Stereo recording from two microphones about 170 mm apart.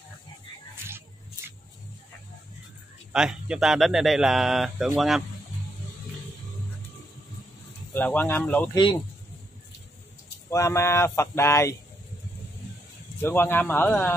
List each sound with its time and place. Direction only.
3.1 s speech: 5° right (ahead or behind)
7.9 s speech: 10° left (ahead or behind)
8.7 s speech: 25° left (ahead or behind)
10.5 s speech: 15° left (ahead or behind)
13.2 s speech: 15° left (ahead or behind)